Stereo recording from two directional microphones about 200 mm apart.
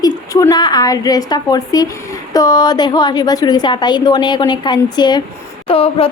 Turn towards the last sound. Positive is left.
turn(degrees=30)  # may be behind; listen again after turning